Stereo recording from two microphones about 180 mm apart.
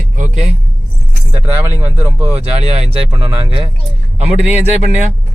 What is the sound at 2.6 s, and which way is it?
Speech, 35° right (ahead or behind).